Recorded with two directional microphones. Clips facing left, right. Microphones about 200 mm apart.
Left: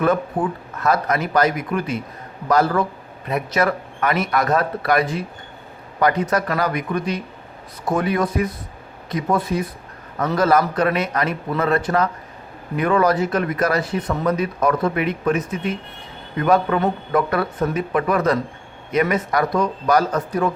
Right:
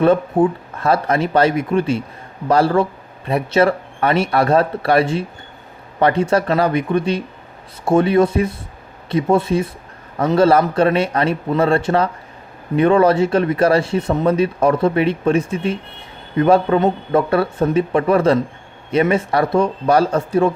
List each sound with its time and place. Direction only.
0.0 s speech: 25° right (ahead or behind)